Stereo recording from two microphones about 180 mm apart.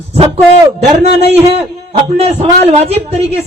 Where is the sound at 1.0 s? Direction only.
35° right (ahead or behind).